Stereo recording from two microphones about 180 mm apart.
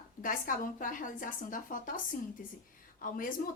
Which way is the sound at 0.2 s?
50° left (ahead or behind).